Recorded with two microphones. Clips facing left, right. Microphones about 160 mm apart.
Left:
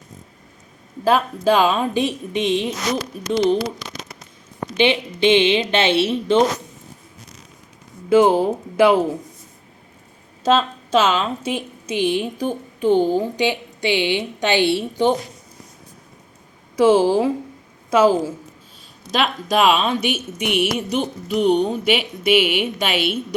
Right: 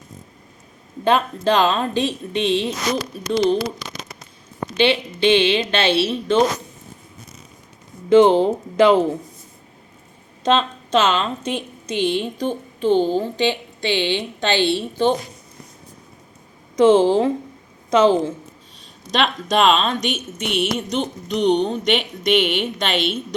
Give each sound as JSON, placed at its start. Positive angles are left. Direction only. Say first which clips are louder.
{"t": 1.0, "sound": "a woman's voice", "louder": "left 1 dB", "side_deg": 5}
{"t": 4.8, "sound": "speech", "louder": "even", "side_deg": 20}
{"t": 8.1, "sound": "a woman's voice", "louder": "right 2 dB", "side_deg": 10}
{"t": 10.4, "sound": "a woman's voice", "louder": "left 1 dB", "side_deg": 5}
{"t": 16.7, "sound": "a woman's voice", "louder": "right 1 dB", "side_deg": 10}